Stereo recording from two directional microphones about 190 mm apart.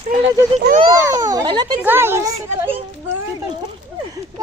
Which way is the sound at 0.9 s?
15° right (ahead or behind).